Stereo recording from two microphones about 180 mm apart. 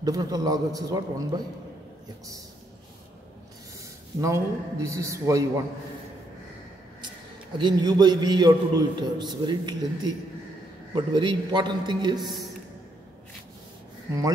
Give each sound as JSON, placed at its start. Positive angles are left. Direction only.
{"t": 0.0, "sound": "a man's voice", "side_deg": -20}
{"t": 4.2, "sound": "a man's voice", "side_deg": -15}
{"t": 7.5, "sound": "a man's voice", "side_deg": -25}